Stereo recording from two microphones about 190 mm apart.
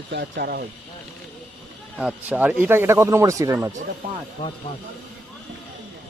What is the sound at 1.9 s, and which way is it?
Speech, 5° right (ahead or behind).